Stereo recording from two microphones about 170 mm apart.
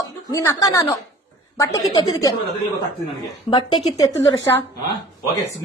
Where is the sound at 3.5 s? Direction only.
25° left (ahead or behind).